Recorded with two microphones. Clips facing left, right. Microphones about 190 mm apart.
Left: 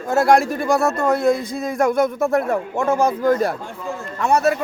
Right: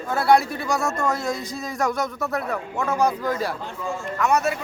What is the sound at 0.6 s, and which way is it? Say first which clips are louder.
Speech: left 6 dB; 55° left (ahead or behind).